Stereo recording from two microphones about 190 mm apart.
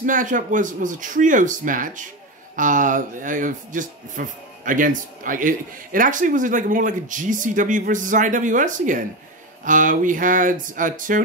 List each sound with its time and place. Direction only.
0.0 s speech: 45° right (ahead or behind)